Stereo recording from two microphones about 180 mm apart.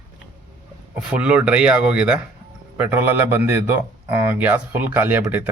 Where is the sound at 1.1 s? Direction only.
5° right (ahead or behind).